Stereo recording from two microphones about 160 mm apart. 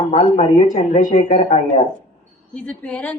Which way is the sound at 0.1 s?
40° left (ahead or behind).